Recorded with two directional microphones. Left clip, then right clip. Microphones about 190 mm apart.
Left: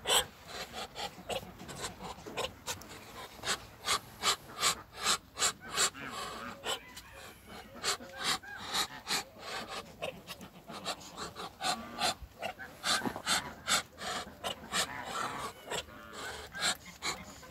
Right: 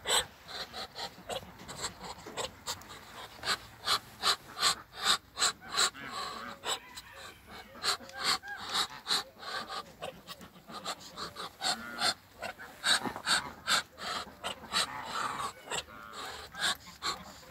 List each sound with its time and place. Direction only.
0.0 s filing: 10° left (ahead or behind)
7.8 s a sound: 10° left (ahead or behind)
13.2 s pant: 10° left (ahead or behind)